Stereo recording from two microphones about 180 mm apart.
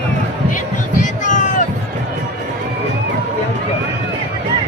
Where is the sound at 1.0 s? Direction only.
45° left (ahead or behind).